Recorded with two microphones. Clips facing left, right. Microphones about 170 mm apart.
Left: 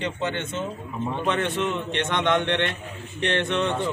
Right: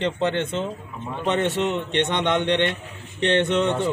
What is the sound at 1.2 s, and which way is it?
Speech, 20° right (ahead or behind).